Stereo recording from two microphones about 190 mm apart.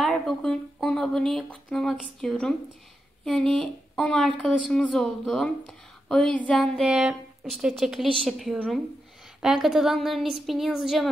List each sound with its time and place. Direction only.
0.0 s speech: 5° left (ahead or behind)